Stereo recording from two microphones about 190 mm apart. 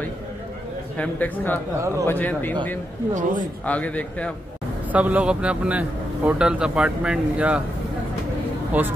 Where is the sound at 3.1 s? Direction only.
45° right (ahead or behind).